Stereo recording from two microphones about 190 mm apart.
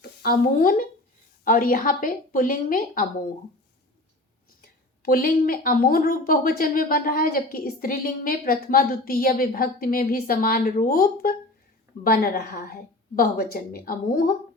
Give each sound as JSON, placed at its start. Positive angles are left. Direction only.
{"t": 0.0, "sound": "speech", "side_deg": 50}
{"t": 4.6, "sound": "speech", "side_deg": 50}